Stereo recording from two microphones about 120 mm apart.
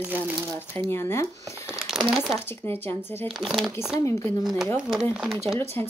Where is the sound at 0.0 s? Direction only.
15° right (ahead or behind).